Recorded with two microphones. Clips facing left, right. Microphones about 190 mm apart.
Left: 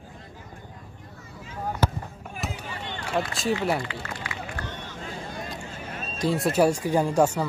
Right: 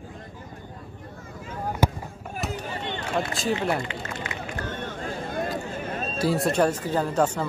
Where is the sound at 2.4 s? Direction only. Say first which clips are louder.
Right 2 dB; centre (ahead or behind).